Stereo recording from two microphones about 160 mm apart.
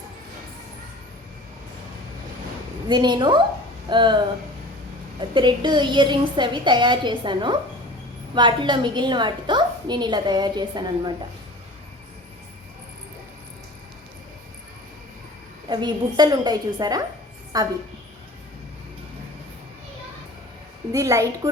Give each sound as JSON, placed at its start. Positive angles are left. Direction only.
{"t": 2.9, "sound": "a woman's voice", "side_deg": -30}
{"t": 5.3, "sound": "a woman's voice", "side_deg": -30}
{"t": 15.7, "sound": "a woman's voice", "side_deg": -25}
{"t": 20.9, "sound": "a woman's voice", "side_deg": -20}